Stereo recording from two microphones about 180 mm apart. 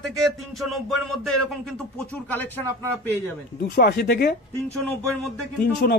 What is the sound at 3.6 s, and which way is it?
Speech, 60° left (ahead or behind).